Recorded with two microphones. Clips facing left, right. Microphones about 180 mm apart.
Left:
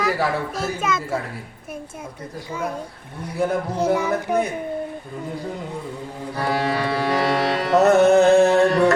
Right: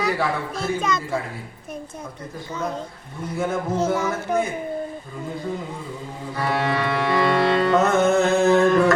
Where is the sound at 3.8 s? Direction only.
15° left (ahead or behind).